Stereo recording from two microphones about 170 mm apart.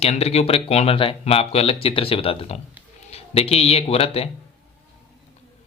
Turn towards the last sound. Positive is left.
turn(degrees=35)  # may be behind; listen again after turning